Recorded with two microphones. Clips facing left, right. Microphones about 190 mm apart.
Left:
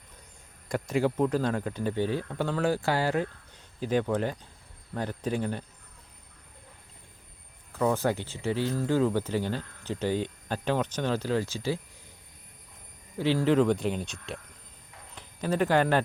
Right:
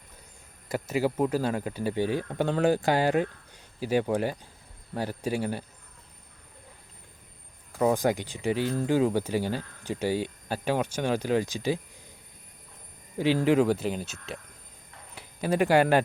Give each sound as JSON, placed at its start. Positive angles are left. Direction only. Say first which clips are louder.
{"t": 0.7, "sound": "speech", "louder": "even", "side_deg": -5}
{"t": 7.9, "sound": "speech", "louder": "right 2 dB", "side_deg": -15}
{"t": 13.1, "sound": "speech", "louder": "right 1 dB", "side_deg": -15}